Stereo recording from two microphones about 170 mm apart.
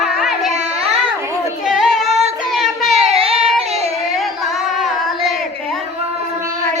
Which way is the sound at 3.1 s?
35° right (ahead or behind).